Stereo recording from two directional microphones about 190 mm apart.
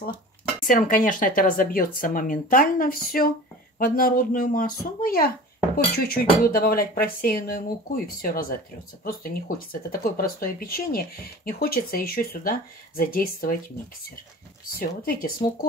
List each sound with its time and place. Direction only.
0.7 s speech: 45° left (ahead or behind)
14.7 s speech: 50° left (ahead or behind)